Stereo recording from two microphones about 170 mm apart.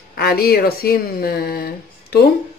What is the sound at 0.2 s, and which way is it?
Speech, 65° left (ahead or behind).